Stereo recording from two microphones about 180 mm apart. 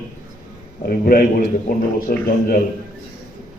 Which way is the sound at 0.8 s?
60° left (ahead or behind).